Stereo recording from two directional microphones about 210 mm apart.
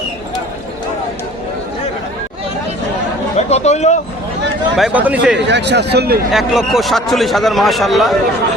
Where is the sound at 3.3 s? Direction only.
30° left (ahead or behind).